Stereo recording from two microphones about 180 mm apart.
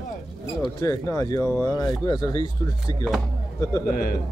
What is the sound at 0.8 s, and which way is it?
Speech, 15° left (ahead or behind).